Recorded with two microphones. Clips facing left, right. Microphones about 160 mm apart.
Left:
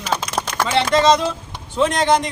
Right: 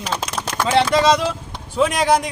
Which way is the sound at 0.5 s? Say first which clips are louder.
Right 1 dB; 10° right (ahead or behind).